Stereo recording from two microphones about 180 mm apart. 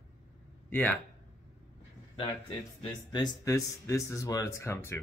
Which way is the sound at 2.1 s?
25° left (ahead or behind).